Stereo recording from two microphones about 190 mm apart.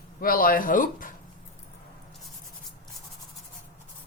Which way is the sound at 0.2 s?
50° left (ahead or behind).